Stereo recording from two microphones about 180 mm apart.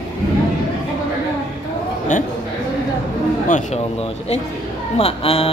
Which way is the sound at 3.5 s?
45° left (ahead or behind).